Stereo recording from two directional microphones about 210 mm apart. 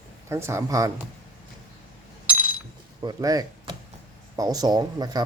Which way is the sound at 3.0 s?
20° right (ahead or behind).